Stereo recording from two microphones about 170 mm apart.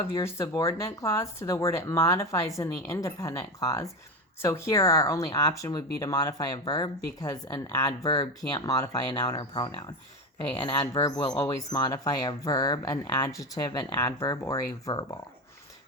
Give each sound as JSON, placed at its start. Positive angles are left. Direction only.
{"t": 0.2, "sound": "speech", "side_deg": 15}
{"t": 10.9, "sound": "speech", "side_deg": 20}